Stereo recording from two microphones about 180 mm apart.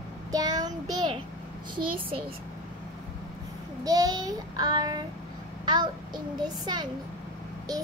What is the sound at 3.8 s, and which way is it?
A child's voice, 20° right (ahead or behind).